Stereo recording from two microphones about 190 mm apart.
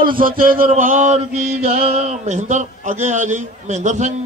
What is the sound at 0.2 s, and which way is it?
Chant, 50° right (ahead or behind).